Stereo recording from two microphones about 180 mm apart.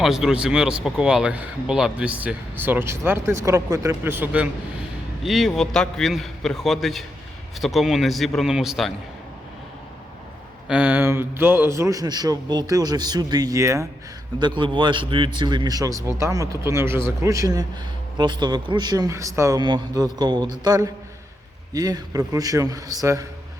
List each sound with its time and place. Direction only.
0.0 s a man's voice: 5° right (ahead or behind)
10.7 s a man's voice: 10° right (ahead or behind)